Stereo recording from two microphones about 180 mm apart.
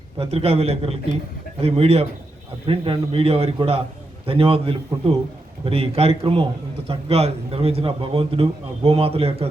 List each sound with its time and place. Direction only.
0.2 s a man's voice: 35° right (ahead or behind)